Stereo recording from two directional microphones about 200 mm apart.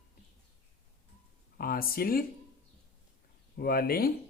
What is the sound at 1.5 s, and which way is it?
Speech, 50° left (ahead or behind).